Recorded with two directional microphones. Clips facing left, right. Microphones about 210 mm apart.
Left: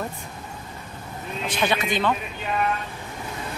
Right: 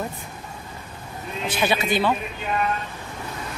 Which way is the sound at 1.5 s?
5° right (ahead or behind).